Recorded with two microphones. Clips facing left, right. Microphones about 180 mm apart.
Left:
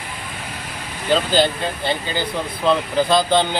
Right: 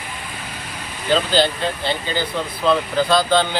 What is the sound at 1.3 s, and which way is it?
Speech, 15° left (ahead or behind).